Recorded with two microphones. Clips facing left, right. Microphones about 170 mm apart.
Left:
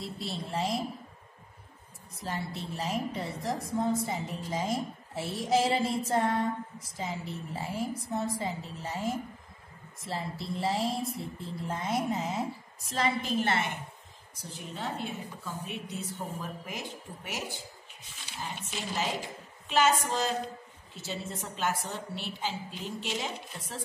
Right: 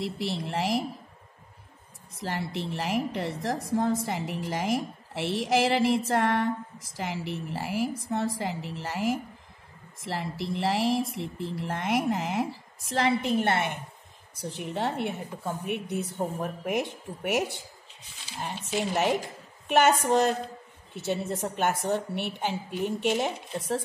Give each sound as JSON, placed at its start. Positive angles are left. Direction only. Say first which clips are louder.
{"t": 0.0, "sound": "a woman's voice", "louder": "right 6 dB", "side_deg": -80}
{"t": 2.1, "sound": "a woman's voice", "louder": "right 4 dB", "side_deg": -75}